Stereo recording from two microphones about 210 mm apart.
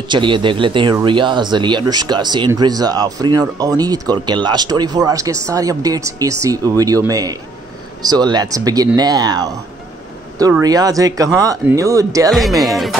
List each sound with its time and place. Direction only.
0.1 s speech: 25° right (ahead or behind)
10.6 s speech: 15° right (ahead or behind)
12.3 s speech: centre (ahead or behind)